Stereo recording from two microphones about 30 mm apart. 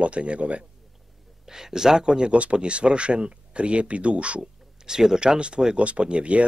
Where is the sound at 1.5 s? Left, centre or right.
Centre.